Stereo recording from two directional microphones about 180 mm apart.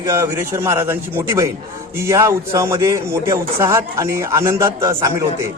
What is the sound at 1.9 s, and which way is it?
A man's voice, 15° right (ahead or behind).